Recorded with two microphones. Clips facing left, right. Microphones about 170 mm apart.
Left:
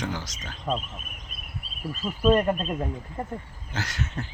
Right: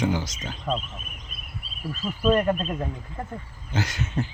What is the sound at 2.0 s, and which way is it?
Speech, 20° left (ahead or behind).